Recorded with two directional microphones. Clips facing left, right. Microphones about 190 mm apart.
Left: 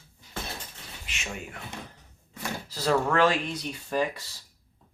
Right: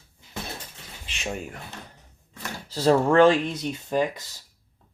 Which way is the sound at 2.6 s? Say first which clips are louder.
Right 6 dB; 30° right (ahead or behind).